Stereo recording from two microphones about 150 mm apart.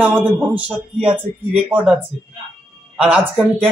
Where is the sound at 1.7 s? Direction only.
15° right (ahead or behind).